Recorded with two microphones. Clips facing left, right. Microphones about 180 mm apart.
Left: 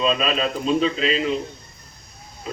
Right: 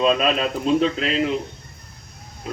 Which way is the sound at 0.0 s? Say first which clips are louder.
Right 2 dB; 55° right (ahead or behind).